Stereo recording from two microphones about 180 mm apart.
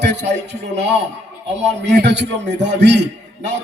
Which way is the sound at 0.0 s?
70° right (ahead or behind).